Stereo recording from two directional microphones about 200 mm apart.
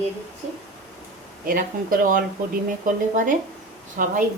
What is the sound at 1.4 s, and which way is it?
Speech, 45° right (ahead or behind).